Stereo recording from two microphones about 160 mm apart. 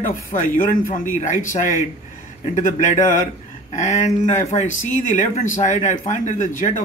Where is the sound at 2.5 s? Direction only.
50° left (ahead or behind).